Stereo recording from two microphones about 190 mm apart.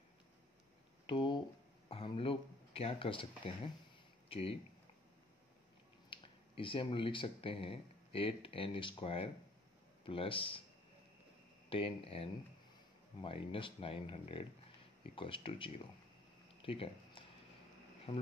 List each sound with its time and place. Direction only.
1.0 s speech: 25° left (ahead or behind)
6.0 s speech: 25° left (ahead or behind)
11.7 s speech: 30° left (ahead or behind)
16.4 s a sound: 30° left (ahead or behind)